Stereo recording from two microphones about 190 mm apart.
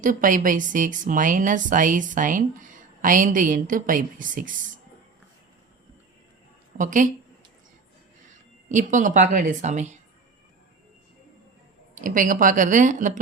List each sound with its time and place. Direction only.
0.0 s speech: 45° right (ahead or behind)
6.7 s speech: 40° right (ahead or behind)
8.7 s a woman's voice: 40° right (ahead or behind)
11.9 s speech: 45° right (ahead or behind)